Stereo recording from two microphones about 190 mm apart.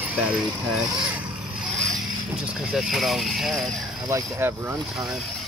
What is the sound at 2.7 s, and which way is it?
Speech, centre (ahead or behind).